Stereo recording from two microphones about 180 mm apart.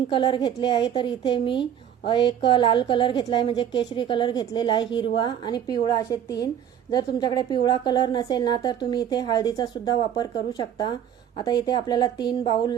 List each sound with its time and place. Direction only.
0.1 s a woman's voice: 25° left (ahead or behind)